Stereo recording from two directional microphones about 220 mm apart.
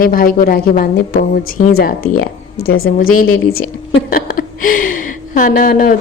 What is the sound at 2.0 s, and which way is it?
A woman's voice, 75° left (ahead or behind).